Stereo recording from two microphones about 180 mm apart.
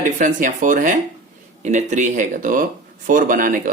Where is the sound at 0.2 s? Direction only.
45° right (ahead or behind).